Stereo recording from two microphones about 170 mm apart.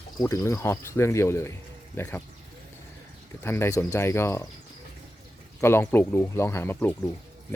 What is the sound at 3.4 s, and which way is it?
Speech, 15° left (ahead or behind).